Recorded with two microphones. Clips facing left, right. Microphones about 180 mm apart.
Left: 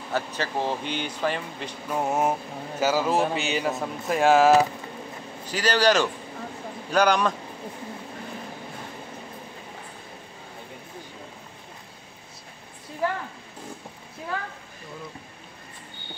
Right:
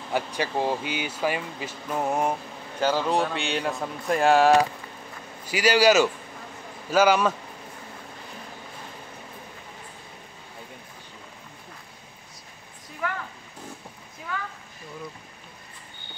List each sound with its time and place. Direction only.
0.1 s a man's voice: 15° right (ahead or behind)
5.5 s speech: 10° right (ahead or behind)
13.0 s a sound: 30° left (ahead or behind)